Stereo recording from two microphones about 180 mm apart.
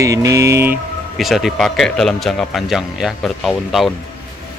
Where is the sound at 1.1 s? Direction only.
Centre (ahead or behind).